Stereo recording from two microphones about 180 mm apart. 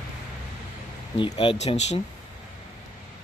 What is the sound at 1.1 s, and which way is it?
Speech, 30° left (ahead or behind).